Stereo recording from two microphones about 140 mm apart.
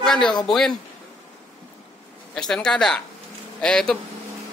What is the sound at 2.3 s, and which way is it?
Speech, 5° left (ahead or behind).